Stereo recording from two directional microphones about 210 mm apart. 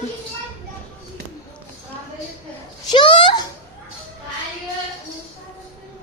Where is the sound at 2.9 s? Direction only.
20° left (ahead or behind).